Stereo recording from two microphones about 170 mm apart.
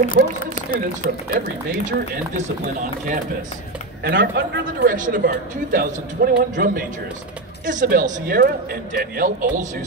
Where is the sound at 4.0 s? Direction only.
65° right (ahead or behind).